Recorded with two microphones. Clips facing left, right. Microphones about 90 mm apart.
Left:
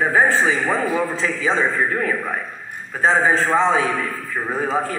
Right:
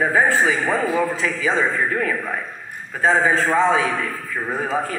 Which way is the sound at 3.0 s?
30° left (ahead or behind).